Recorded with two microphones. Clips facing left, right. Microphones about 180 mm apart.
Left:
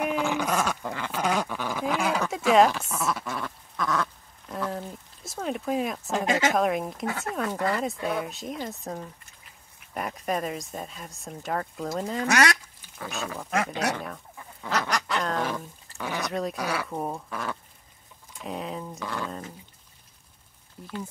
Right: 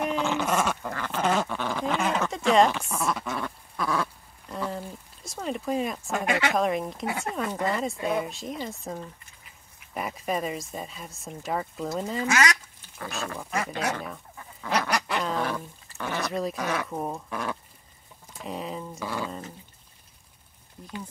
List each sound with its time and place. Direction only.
0.0 s dog: 5° left (ahead or behind)
0.5 s speech: 5° right (ahead or behind)
0.8 s dog: 15° left (ahead or behind)
1.1 s dog: centre (ahead or behind)
1.4 s a sound: 10° left (ahead or behind)
6.2 s speech: 40° left (ahead or behind)
6.5 s speech: centre (ahead or behind)
7.1 s duck: 15° right (ahead or behind)
7.7 s speech: centre (ahead or behind)
14.0 s chicken: centre (ahead or behind)
14.7 s duck: 10° right (ahead or behind)
15.4 s speech: 15° left (ahead or behind)
16.2 s speech: centre (ahead or behind)